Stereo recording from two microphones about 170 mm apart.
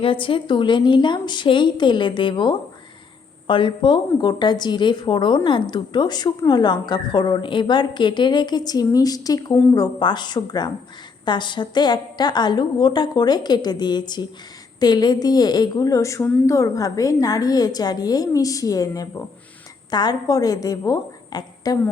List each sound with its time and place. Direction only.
0.0 s a woman's voice: 30° left (ahead or behind)